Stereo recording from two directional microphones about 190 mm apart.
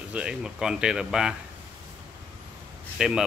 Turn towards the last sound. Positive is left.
turn(degrees=-5)  # may be behind; listen again after turning